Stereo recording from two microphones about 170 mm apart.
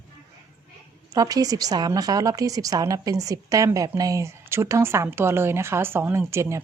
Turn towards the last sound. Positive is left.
turn(degrees=-15)  # may be behind; listen again after turning